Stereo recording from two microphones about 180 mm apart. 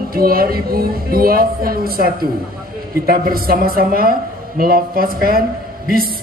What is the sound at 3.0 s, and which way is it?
A man's voice, 55° right (ahead or behind).